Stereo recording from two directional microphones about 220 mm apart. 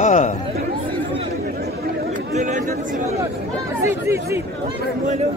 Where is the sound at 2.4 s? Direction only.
35° right (ahead or behind).